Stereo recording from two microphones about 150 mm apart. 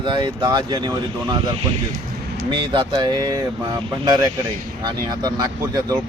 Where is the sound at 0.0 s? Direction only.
30° right (ahead or behind).